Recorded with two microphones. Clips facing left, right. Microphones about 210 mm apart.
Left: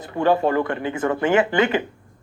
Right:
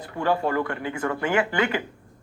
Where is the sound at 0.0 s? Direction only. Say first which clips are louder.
Left 5 dB; 25° left (ahead or behind).